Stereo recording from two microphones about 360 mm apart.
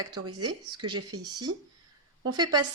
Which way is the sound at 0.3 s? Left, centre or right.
Right.